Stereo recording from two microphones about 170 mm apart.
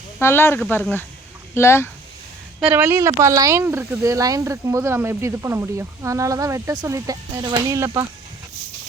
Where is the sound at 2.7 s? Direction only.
15° right (ahead or behind).